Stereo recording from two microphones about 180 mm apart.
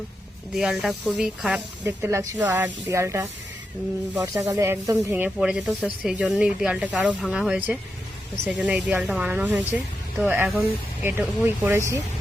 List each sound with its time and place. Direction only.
0.5 s speech: centre (ahead or behind)